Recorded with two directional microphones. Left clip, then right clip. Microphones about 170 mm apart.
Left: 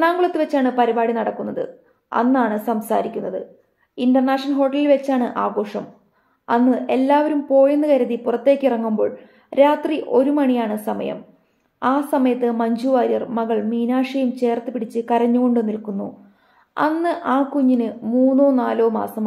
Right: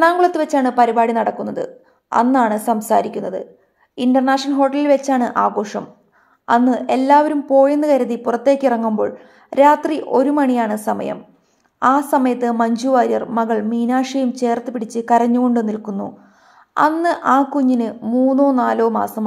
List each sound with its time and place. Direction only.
0.0 s a woman's voice: 30° right (ahead or behind)